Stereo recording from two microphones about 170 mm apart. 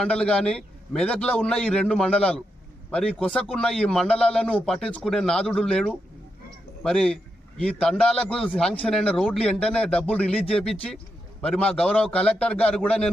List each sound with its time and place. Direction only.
0.0 s a man's voice: 5° left (ahead or behind)